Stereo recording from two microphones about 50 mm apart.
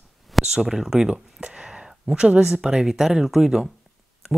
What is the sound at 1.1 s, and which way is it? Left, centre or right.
Speech, centre.